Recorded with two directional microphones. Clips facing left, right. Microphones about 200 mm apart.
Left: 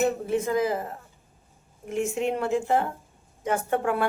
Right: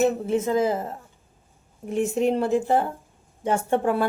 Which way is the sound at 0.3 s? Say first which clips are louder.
Right 3 dB; 25° right (ahead or behind).